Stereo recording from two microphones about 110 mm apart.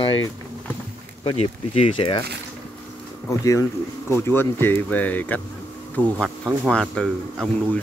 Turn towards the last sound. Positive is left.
turn(degrees=10)  # may be behind; listen again after turning